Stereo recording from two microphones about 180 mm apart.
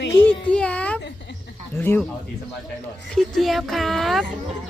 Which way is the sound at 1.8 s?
10° left (ahead or behind).